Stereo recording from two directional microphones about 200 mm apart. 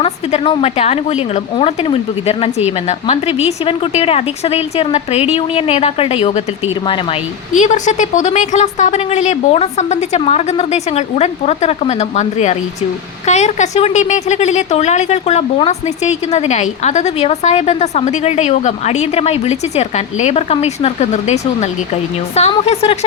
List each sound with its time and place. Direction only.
0.0 s a woman's voice: 30° left (ahead or behind)
7.5 s a woman's voice: 35° left (ahead or behind)